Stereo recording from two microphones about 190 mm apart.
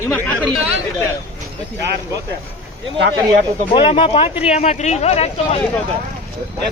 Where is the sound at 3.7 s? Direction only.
30° left (ahead or behind).